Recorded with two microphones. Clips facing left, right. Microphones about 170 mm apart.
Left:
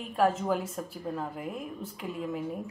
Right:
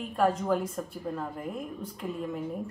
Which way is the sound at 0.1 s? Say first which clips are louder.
Even; 5° left (ahead or behind).